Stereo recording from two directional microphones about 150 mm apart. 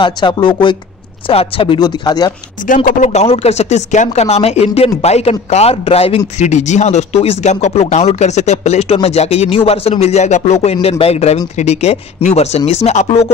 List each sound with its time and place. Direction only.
0.0 s speech: 30° left (ahead or behind)
2.6 s speech: 60° left (ahead or behind); by 13.3 s 45° left (ahead or behind)